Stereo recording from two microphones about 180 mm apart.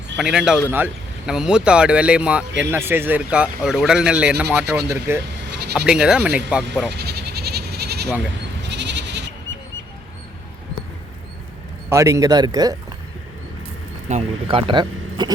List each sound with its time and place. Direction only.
0.2 s speech: 5° right (ahead or behind)
5.5 s bleat: 65° right (ahead or behind)
5.7 s speech: 5° right (ahead or behind)
6.9 s goat: 65° right (ahead or behind)
8.6 s sheep: 75° right (ahead or behind)
11.9 s speech: 15° right (ahead or behind)
14.1 s speech: 35° right (ahead or behind)